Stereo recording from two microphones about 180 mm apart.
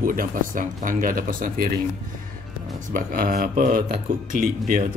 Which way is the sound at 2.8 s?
50° right (ahead or behind).